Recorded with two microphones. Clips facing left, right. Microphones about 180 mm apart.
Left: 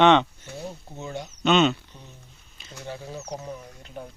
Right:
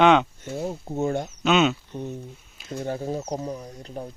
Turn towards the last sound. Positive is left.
turn(degrees=-35)  # may be behind; listen again after turning